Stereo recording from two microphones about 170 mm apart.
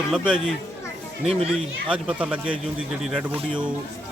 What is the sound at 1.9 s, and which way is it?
A man's voice, 10° right (ahead or behind).